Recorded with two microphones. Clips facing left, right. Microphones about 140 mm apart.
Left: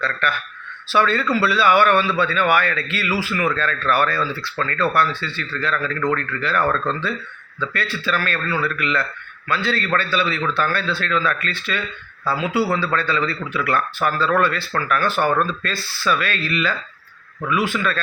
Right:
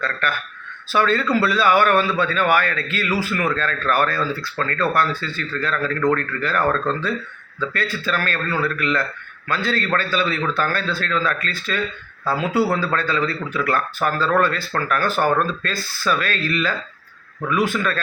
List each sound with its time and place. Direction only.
0.0 s a man's voice: 45° right (ahead or behind)